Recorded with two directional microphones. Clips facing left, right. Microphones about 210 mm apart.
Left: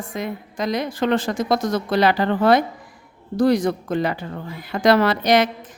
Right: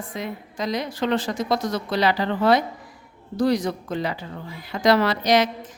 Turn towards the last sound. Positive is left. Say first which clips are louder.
# left 2 dB
turn(degrees=55)  # may be behind; listen again after turning